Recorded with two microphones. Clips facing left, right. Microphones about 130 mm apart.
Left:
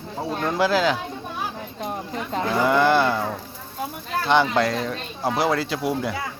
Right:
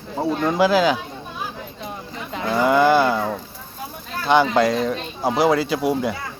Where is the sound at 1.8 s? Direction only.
45° left (ahead or behind).